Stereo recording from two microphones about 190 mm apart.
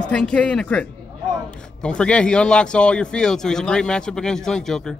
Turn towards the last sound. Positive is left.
turn(degrees=5)  # may be behind; listen again after turning